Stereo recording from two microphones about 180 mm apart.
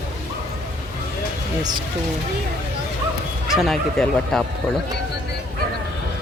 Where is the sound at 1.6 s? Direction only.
25° right (ahead or behind).